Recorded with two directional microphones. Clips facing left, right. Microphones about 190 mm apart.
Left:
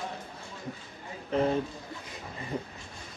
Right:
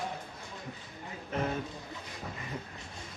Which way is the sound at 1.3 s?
30° left (ahead or behind).